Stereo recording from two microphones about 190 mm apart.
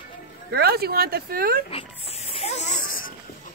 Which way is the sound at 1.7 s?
30° left (ahead or behind).